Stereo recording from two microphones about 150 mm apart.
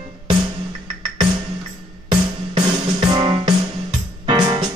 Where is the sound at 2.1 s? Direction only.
30° right (ahead or behind).